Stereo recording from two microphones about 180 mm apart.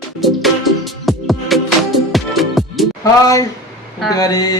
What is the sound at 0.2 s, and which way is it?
Music, centre (ahead or behind).